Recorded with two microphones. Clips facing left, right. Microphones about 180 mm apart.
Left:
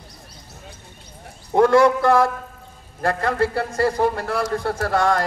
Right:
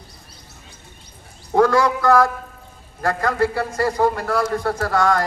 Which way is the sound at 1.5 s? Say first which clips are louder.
Left 2 dB; 25° left (ahead or behind).